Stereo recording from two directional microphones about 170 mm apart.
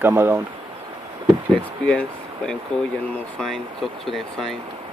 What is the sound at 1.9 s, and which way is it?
Speech, 5° left (ahead or behind).